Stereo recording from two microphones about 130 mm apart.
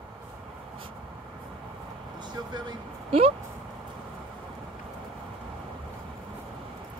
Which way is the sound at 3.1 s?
45° right (ahead or behind).